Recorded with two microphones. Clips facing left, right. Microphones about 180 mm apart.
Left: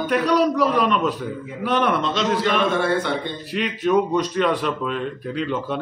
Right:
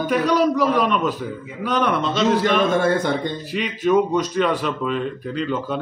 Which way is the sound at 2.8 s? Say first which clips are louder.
Right 2 dB; 45° right (ahead or behind).